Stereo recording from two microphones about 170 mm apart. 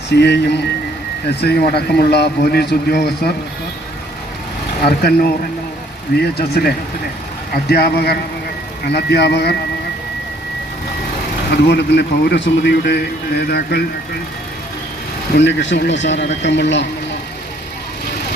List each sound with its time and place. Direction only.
0.1 s a man's voice: 85° left
1.4 s a man's voice: 70° left (ahead or behind)
4.9 s a man's voice: 65° left (ahead or behind)
8.9 s a man's voice: 80° left
11.5 s a man's voice: 85° left
15.4 s speech: 90° left